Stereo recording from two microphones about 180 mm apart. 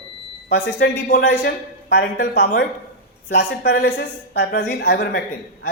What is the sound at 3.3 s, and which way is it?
A man's voice, 70° left (ahead or behind).